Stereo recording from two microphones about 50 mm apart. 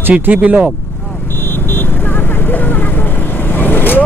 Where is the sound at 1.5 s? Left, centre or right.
Left.